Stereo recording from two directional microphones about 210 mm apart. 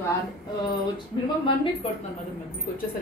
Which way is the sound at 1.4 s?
25° left (ahead or behind).